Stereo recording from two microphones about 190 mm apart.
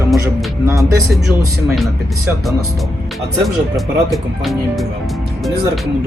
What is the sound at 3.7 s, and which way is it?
Speech, centre (ahead or behind).